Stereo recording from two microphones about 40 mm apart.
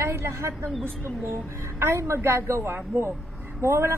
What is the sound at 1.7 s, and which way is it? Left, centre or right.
A woman's voice, right.